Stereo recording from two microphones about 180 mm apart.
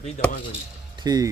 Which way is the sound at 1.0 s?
20° right (ahead or behind).